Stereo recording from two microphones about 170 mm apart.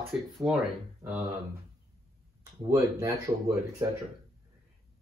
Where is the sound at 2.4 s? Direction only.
20° right (ahead or behind).